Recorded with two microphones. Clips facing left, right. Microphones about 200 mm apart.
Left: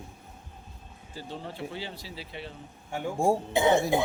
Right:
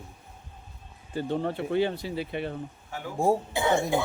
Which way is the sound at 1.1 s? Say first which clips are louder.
Right 10 dB; 60° right (ahead or behind).